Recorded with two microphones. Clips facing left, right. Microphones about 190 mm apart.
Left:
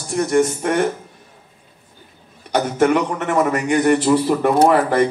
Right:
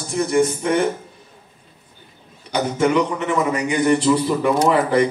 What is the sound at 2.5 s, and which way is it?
A man's voice, 50° left (ahead or behind).